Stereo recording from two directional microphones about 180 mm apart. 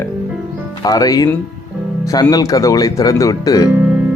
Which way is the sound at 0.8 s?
20° left (ahead or behind).